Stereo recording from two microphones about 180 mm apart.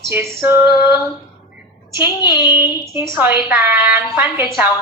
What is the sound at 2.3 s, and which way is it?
A woman's voice, 10° right (ahead or behind).